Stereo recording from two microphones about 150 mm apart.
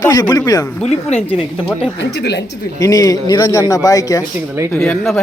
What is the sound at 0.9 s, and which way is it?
Speech, 40° left (ahead or behind).